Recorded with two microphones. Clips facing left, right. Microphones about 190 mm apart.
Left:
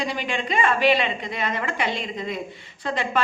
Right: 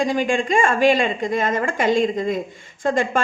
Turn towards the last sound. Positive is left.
turn(degrees=-45)  # may be behind; listen again after turning